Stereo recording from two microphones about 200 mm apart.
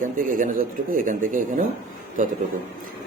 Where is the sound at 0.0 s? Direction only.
40° right (ahead or behind).